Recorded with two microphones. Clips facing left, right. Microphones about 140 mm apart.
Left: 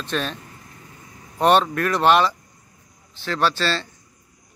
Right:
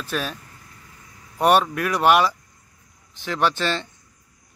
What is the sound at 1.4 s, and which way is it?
Speech, 10° right (ahead or behind).